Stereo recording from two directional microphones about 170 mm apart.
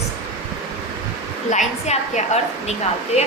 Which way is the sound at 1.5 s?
45° left (ahead or behind).